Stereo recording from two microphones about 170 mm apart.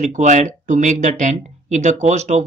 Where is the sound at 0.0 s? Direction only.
45° right (ahead or behind).